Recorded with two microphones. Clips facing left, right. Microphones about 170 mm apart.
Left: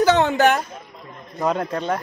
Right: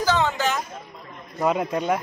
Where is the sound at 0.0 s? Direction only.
70° left (ahead or behind).